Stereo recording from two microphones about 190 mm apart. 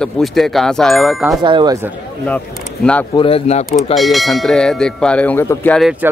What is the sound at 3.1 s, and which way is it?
Speech, 30° left (ahead or behind).